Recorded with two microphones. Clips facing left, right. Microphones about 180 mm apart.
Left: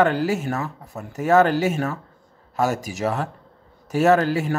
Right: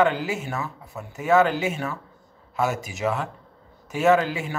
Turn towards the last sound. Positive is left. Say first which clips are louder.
# left 2 dB
turn(degrees=45)  # may be behind; listen again after turning